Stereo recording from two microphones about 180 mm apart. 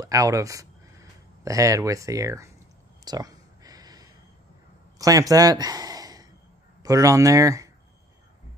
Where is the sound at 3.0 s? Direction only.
20° right (ahead or behind).